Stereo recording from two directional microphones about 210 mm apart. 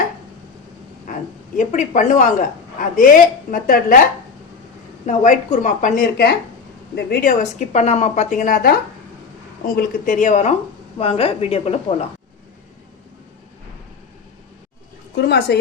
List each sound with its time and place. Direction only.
1.5 s a woman's voice: 35° left (ahead or behind)
15.1 s speech: 50° left (ahead or behind)